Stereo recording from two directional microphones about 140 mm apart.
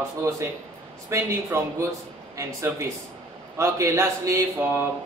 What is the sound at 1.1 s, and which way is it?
A man's voice, 20° right (ahead or behind).